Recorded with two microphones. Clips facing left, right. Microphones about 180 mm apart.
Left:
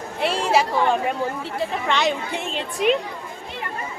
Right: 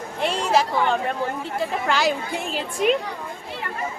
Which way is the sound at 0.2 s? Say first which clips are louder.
Left 1 dB; 5° left (ahead or behind).